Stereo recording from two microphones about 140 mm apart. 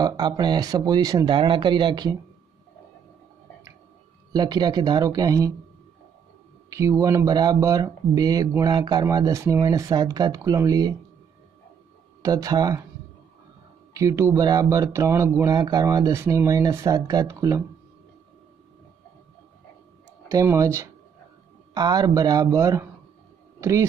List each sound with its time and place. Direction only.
0.0 s speech: 30° right (ahead or behind)
4.3 s speech: 30° right (ahead or behind)
6.7 s speech: 25° right (ahead or behind)
12.2 s speech: 25° right (ahead or behind)
13.9 s speech: 20° right (ahead or behind)
20.2 s speech: 20° right (ahead or behind)